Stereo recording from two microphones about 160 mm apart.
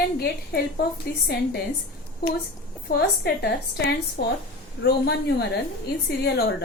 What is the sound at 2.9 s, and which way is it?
A woman's voice, 90° left.